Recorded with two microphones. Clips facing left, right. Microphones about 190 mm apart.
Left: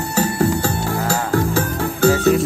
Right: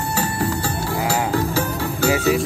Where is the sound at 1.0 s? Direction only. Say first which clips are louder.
Left 1 dB; 50° left (ahead or behind).